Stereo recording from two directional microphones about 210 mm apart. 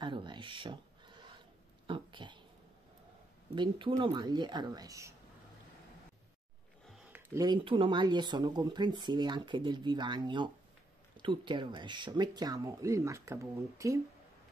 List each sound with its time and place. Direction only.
0.0 s a sound: 20° right (ahead or behind)
3.5 s speech: 20° right (ahead or behind)
7.3 s speech: 20° right (ahead or behind)